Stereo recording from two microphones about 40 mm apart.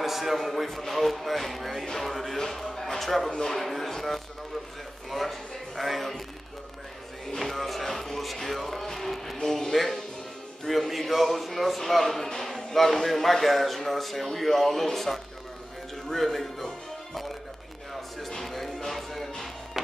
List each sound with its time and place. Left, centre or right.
0.0 s speech: centre
7.2 s a man's voice: centre
18.2 s music: centre